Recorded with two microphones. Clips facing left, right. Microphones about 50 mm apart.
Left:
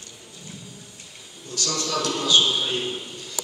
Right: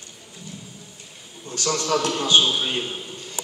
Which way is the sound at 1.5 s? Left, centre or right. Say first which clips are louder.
Right 5 dB; right.